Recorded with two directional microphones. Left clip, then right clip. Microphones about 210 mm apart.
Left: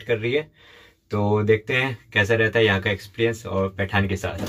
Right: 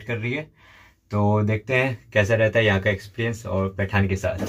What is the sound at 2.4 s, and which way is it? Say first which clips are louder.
Speech: even; centre (ahead or behind).